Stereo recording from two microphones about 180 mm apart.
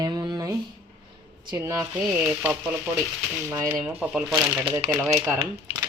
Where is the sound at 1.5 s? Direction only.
20° right (ahead or behind).